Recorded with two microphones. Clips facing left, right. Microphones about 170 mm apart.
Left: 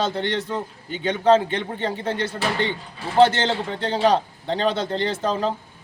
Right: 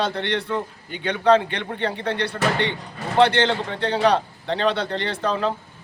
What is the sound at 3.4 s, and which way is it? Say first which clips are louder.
Speech: right 1 dB; 25° left (ahead or behind).